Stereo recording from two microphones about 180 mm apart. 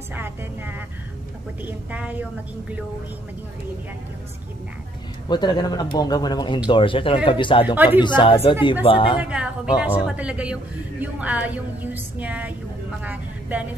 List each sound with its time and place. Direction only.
0.1 s speech: 10° right (ahead or behind)
5.3 s speech: 25° left (ahead or behind)
7.6 s speech: 10° right (ahead or behind)
8.0 s speech: 25° left (ahead or behind)
9.2 s a woman's voice: 5° right (ahead or behind)